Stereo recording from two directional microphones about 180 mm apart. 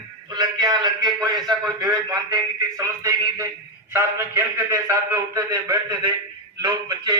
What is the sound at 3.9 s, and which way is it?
A man's voice, 15° right (ahead or behind).